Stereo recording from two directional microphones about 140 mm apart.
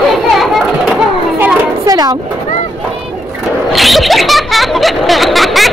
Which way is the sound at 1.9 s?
30° right (ahead or behind).